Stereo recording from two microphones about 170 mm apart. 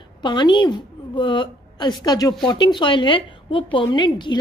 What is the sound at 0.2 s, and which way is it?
A woman's voice, 25° left (ahead or behind).